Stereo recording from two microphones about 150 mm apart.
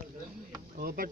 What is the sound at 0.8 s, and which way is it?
Speech, 75° right (ahead or behind).